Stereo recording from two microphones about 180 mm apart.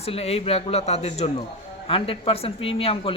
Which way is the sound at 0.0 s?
35° left (ahead or behind).